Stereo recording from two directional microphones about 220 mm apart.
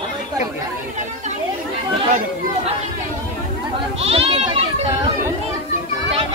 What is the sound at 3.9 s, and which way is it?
Speech, 25° right (ahead or behind).